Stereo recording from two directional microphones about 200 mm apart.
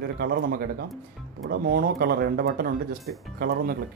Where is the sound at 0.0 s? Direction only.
55° right (ahead or behind).